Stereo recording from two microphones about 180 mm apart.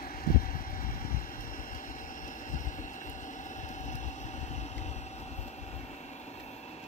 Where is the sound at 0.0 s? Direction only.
50° left (ahead or behind).